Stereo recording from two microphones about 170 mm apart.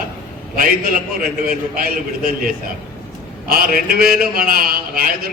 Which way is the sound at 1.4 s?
60° right (ahead or behind).